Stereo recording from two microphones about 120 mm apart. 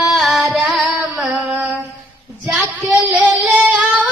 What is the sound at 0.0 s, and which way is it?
Music, centre (ahead or behind).